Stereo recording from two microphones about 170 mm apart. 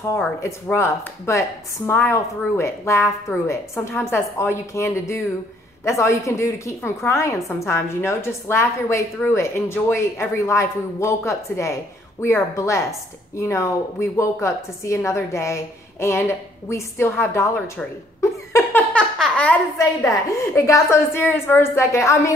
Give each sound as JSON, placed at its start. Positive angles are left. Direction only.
{"t": 0.4, "sound": "a woman's voice", "side_deg": 15}
{"t": 18.5, "sound": "a sound", "side_deg": 15}
{"t": 19.1, "sound": "speech", "side_deg": 5}
{"t": 19.8, "sound": "a woman's voice", "side_deg": 20}